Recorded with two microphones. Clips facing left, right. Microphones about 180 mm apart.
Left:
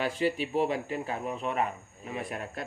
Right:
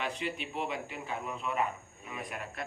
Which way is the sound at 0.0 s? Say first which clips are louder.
Left 7 dB; 35° left (ahead or behind).